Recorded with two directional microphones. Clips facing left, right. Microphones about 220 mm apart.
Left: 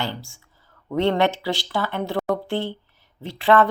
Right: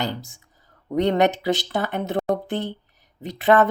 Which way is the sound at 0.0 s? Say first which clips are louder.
Right 2 dB; 20° right (ahead or behind).